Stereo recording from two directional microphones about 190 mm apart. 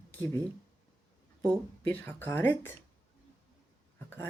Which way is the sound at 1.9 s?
10° left (ahead or behind).